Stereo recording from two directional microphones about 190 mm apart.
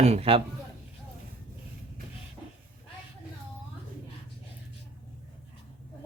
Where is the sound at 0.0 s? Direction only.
35° right (ahead or behind).